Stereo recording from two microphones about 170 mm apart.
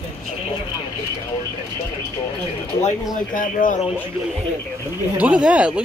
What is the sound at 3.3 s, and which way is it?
Speech, 50° left (ahead or behind).